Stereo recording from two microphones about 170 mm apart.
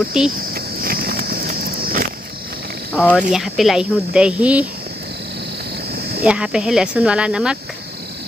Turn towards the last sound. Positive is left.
turn(degrees=-5)  # may be behind; listen again after turning